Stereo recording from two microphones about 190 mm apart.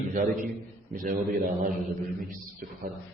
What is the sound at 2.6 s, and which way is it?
Speech, 45° right (ahead or behind).